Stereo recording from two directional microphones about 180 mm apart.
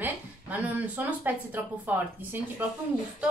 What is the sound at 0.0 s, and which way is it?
A woman's voice, 10° right (ahead or behind).